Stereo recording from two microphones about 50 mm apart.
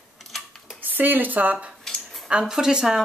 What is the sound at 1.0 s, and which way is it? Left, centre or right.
Speech, right.